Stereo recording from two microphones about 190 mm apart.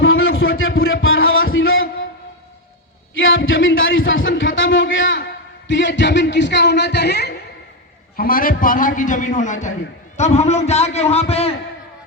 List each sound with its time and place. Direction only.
0.0 s a sound: 90° left
3.2 s speech: 90° left; by 7.3 s 60° left (ahead or behind)
8.1 s a man's voice: 50° left (ahead or behind); by 11.5 s 35° left (ahead or behind)